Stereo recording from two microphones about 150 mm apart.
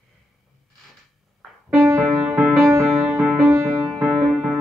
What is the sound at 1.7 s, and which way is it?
Music, 20° right (ahead or behind).